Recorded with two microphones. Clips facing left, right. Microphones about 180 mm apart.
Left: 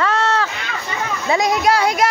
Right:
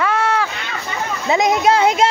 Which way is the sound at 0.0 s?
10° right (ahead or behind).